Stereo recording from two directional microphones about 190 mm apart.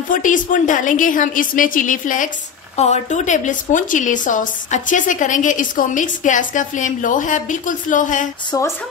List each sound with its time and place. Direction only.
0.1 s speech: 45° left (ahead or behind)
8.5 s speech: 15° left (ahead or behind)